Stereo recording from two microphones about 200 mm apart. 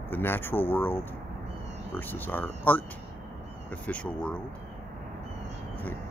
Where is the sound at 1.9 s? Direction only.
10° left (ahead or behind).